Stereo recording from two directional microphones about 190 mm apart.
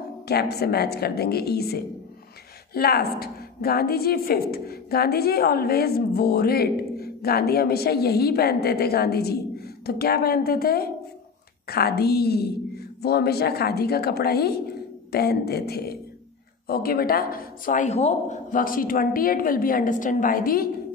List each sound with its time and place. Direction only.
0.3 s speech: 55° left (ahead or behind)